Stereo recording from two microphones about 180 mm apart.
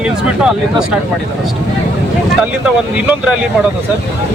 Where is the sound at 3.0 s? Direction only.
5° right (ahead or behind).